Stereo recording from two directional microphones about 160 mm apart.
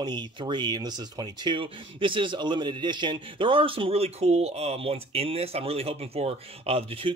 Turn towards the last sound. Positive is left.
turn(degrees=-35)  # may be behind; listen again after turning